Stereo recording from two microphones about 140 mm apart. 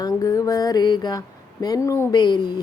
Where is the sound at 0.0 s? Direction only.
25° left (ahead or behind).